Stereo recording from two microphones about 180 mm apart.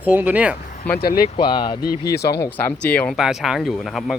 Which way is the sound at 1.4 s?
30° left (ahead or behind).